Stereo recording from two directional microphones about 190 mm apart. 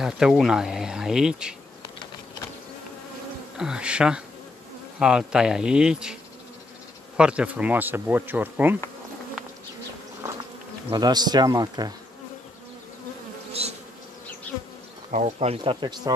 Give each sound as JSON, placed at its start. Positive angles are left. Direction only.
{"t": 0.0, "sound": "speech", "side_deg": 0}
{"t": 3.5, "sound": "speech", "side_deg": -5}
{"t": 7.2, "sound": "speech", "side_deg": -5}
{"t": 10.9, "sound": "speech", "side_deg": -20}
{"t": 13.5, "sound": "bee", "side_deg": -35}
{"t": 15.0, "sound": "speech", "side_deg": -40}